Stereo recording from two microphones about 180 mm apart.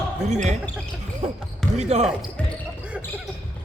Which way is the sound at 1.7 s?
35° right (ahead or behind).